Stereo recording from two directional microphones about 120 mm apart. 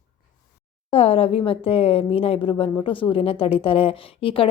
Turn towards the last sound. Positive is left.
turn(degrees=50)  # may be behind; listen again after turning